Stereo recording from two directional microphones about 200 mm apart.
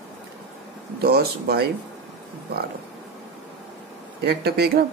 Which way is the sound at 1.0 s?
50° right (ahead or behind).